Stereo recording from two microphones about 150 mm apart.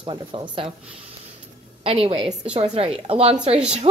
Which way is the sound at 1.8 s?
40° right (ahead or behind).